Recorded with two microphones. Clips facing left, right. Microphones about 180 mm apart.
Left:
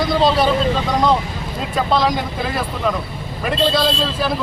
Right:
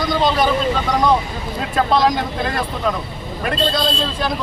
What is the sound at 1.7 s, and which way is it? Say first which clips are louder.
Speech: right 2 dB; centre (ahead or behind).